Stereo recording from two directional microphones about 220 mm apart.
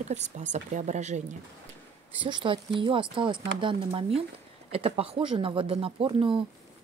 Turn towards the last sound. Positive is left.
turn(degrees=-25)  # may be behind; listen again after turning